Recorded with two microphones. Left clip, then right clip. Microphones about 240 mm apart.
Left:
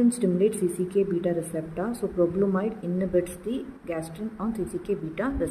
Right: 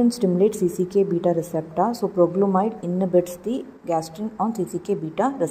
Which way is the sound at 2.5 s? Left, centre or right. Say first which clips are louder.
Right 6 dB; centre.